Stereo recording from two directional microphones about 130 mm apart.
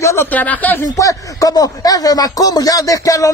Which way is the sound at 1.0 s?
25° left (ahead or behind).